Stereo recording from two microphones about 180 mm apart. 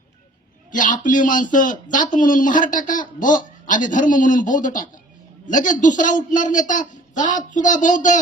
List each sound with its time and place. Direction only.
0.7 s a man's voice: 45° left (ahead or behind)